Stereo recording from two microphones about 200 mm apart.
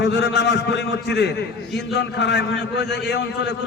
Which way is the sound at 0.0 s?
60° left (ahead or behind).